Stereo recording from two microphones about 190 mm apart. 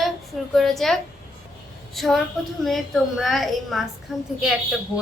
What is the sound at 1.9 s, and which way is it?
A woman's voice, centre (ahead or behind).